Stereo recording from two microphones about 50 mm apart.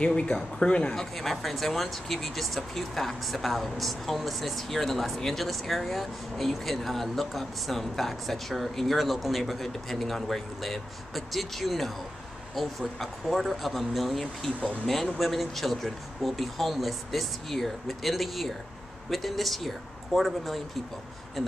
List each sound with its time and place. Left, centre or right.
0.0 s speech: centre
0.9 s speech: centre